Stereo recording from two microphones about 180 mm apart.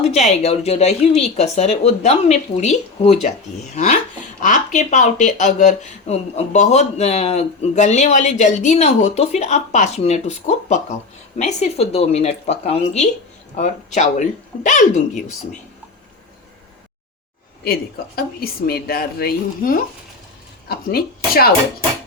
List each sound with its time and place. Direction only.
0.0 s speech: 35° left (ahead or behind)
4.4 s speech: 45° left (ahead or behind)
18.3 s speech: 55° left (ahead or behind)